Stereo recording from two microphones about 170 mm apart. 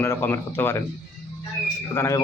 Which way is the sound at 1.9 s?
20° left (ahead or behind).